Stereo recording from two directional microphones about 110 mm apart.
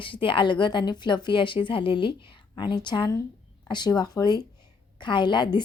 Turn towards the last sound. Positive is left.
turn(degrees=45)  # may be behind; listen again after turning